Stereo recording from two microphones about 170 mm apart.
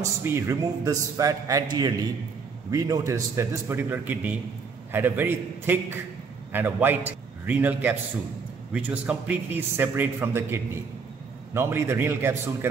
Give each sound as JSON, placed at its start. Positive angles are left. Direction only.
{"t": 0.0, "sound": "a man's voice", "side_deg": -15}